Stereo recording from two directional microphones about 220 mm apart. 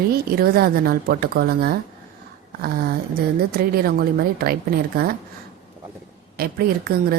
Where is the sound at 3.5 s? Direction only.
45° right (ahead or behind).